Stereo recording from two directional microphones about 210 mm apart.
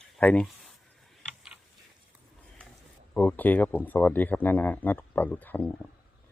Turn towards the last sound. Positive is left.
turn(degrees=5)  # may be behind; listen again after turning